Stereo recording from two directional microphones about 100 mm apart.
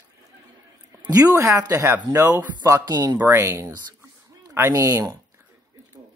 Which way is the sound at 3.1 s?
25° right (ahead or behind).